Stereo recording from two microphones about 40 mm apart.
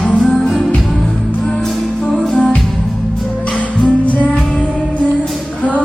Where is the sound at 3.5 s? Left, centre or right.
Left.